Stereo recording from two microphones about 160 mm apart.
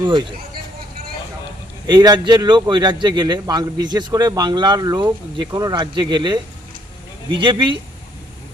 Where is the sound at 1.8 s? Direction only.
25° right (ahead or behind).